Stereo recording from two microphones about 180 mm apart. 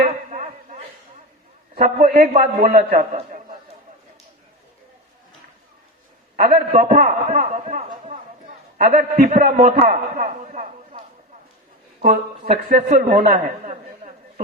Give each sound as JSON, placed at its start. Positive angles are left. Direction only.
{"t": 0.3, "sound": "a sound", "side_deg": -40}
{"t": 1.7, "sound": "a man's voice", "side_deg": -45}
{"t": 6.3, "sound": "a man's voice", "side_deg": -45}
{"t": 8.8, "sound": "a man's voice", "side_deg": -50}
{"t": 11.9, "sound": "a man's voice", "side_deg": -55}